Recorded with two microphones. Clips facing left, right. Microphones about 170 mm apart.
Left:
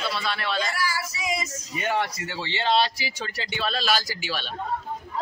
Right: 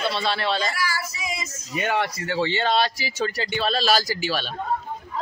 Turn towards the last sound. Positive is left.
turn(degrees=-40)  # may be behind; listen again after turning